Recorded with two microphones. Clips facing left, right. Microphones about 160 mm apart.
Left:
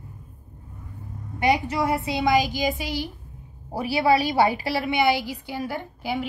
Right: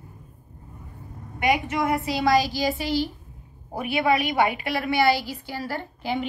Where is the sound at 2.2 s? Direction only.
15° left (ahead or behind).